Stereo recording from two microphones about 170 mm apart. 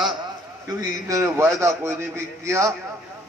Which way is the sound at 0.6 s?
20° right (ahead or behind).